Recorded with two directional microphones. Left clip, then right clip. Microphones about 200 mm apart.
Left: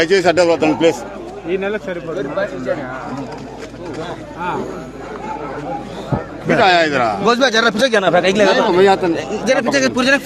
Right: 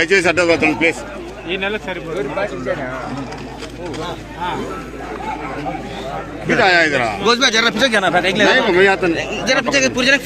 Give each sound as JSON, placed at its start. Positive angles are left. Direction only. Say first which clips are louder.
{"t": 0.0, "sound": "speech", "louder": "left 1 dB", "side_deg": 15}
{"t": 1.5, "sound": "speech", "louder": "left 1 dB", "side_deg": 50}
{"t": 6.6, "sound": "a man's voice", "louder": "left 1 dB", "side_deg": 15}
{"t": 7.2, "sound": "speech", "louder": "even", "side_deg": 55}
{"t": 8.7, "sound": "a man's voice", "louder": "left 1 dB", "side_deg": 10}
{"t": 9.1, "sound": "speech", "louder": "left 1 dB", "side_deg": 45}